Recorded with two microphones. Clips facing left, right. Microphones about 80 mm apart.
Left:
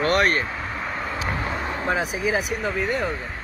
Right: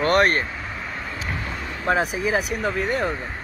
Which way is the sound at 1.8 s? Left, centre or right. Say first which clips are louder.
Right 4 dB; right.